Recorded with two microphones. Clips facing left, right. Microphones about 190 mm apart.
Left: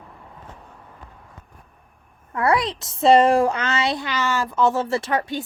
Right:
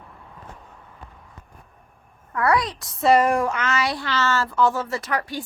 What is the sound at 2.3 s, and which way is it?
A woman's voice, 25° left (ahead or behind).